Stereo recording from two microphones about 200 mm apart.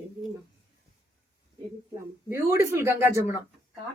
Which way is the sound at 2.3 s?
15° right (ahead or behind).